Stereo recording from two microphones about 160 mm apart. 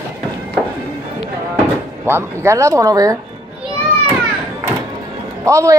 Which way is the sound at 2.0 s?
15° right (ahead or behind).